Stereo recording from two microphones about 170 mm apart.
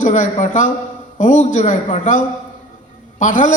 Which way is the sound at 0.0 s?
45° left (ahead or behind).